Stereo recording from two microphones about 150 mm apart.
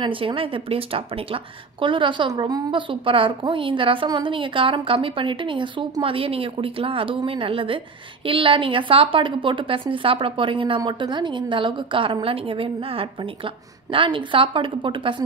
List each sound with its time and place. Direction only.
0.0 s speech: 35° right (ahead or behind)